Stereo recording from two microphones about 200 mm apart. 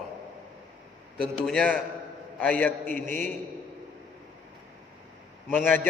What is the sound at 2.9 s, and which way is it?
Speech, 40° right (ahead or behind).